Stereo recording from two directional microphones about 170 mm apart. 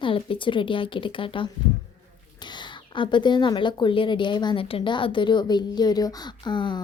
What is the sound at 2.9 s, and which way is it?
A woman's voice, 30° left (ahead or behind).